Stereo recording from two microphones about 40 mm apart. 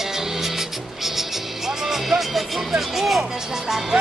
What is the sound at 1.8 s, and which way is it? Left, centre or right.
Speech, centre.